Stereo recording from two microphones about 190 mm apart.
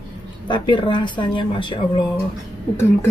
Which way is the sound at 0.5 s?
25° left (ahead or behind).